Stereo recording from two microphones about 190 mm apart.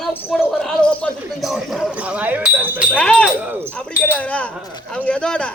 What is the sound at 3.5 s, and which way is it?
Speech, 10° right (ahead or behind).